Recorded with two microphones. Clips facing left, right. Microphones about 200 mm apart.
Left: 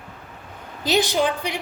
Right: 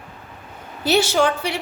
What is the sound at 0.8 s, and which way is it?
Speech, 15° left (ahead or behind).